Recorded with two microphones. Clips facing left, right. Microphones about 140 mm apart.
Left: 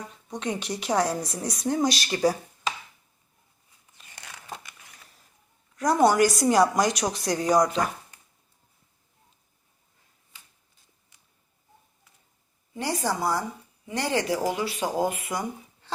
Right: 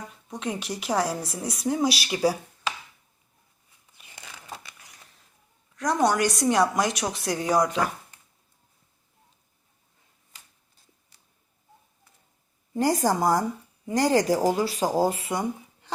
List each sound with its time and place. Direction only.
0.3 s a woman's voice: 5° right (ahead or behind)
5.7 s a woman's voice: 5° left (ahead or behind)
12.7 s a woman's voice: 45° right (ahead or behind); by 15.9 s 25° right (ahead or behind)